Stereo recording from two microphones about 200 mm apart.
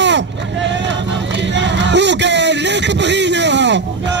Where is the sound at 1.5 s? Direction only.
60° right (ahead or behind).